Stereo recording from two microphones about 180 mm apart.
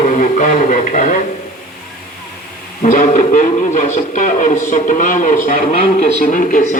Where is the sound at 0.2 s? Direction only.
45° left (ahead or behind).